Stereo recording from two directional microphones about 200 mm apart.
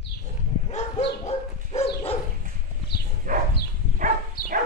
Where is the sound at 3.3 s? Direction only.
40° right (ahead or behind).